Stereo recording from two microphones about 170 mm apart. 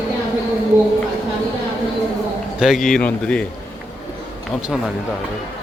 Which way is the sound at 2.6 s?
Centre (ahead or behind).